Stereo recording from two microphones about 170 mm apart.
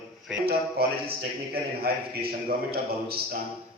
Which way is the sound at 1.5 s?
65° right (ahead or behind).